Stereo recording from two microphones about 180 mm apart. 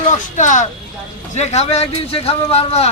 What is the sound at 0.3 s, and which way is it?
A man's voice, 45° left (ahead or behind).